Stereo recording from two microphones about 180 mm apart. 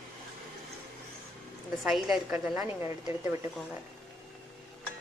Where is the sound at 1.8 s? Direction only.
Centre (ahead or behind).